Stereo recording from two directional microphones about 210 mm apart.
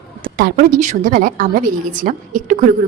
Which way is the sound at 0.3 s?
45° right (ahead or behind).